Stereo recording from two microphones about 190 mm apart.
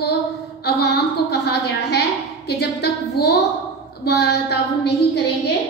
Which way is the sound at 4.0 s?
60° left (ahead or behind).